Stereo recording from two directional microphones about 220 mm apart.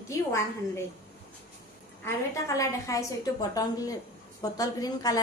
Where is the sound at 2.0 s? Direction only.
15° left (ahead or behind).